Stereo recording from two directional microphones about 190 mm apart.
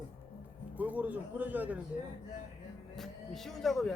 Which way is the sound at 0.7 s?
10° right (ahead or behind).